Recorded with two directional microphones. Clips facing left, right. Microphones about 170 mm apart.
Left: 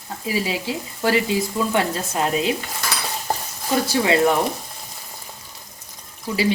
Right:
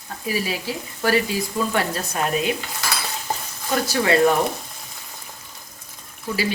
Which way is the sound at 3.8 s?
20° left (ahead or behind).